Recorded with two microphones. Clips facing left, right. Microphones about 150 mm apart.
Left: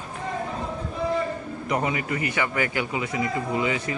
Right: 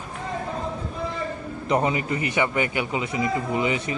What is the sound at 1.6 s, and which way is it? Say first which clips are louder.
A man's voice: right 3 dB; 25° right (ahead or behind).